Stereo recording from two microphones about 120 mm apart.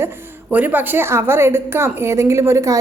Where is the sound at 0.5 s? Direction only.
15° right (ahead or behind).